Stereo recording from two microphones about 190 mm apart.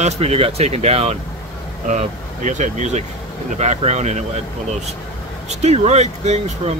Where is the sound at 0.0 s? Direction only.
35° right (ahead or behind).